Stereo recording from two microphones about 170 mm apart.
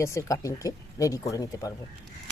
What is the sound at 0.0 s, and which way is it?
Speech, 20° left (ahead or behind).